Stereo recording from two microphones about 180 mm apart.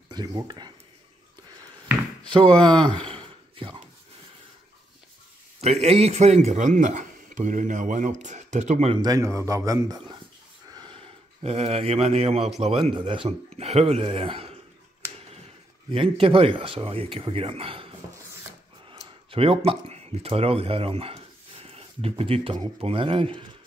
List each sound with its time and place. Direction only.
0.1 s speech: 20° right (ahead or behind)
2.3 s speech: 25° right (ahead or behind)
5.6 s speech: 35° right (ahead or behind)
8.9 s speech: 20° right (ahead or behind)
15.9 s speech: 30° right (ahead or behind)